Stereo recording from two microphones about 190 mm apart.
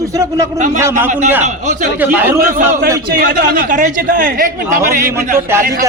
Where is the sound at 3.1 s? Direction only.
55° right (ahead or behind).